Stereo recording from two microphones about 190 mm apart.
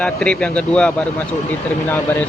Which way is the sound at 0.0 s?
5° left (ahead or behind).